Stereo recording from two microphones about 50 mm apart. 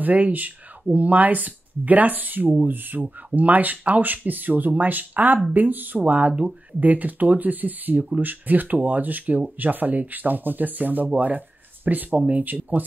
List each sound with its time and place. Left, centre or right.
0.0 s speech: right